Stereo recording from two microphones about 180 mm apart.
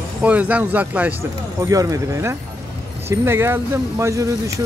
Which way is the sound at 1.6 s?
20° right (ahead or behind).